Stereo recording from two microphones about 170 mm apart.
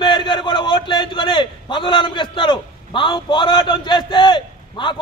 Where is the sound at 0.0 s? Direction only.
30° left (ahead or behind).